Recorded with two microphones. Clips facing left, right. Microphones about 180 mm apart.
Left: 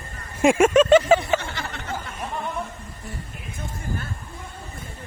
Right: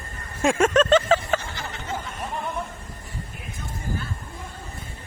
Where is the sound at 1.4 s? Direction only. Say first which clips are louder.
Left 2 dB; 65° left (ahead or behind).